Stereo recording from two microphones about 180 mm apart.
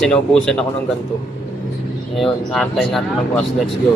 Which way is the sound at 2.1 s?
Centre (ahead or behind).